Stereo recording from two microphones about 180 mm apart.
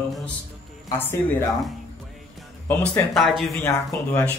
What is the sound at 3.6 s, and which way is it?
Speech, 15° left (ahead or behind).